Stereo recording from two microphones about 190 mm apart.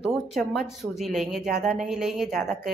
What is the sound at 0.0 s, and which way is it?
Speech, centre (ahead or behind).